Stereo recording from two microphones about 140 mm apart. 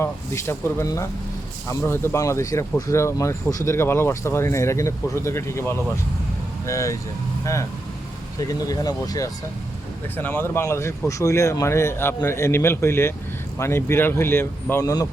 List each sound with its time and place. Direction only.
0.0 s speech: 20° left (ahead or behind)
8.4 s speech: 25° left (ahead or behind)
10.2 s speech: 15° left (ahead or behind)